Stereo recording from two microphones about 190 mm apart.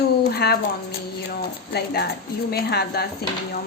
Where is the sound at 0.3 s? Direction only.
55° left (ahead or behind).